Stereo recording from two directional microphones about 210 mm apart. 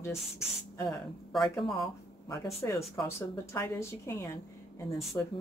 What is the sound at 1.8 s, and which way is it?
A woman's voice, 15° left (ahead or behind).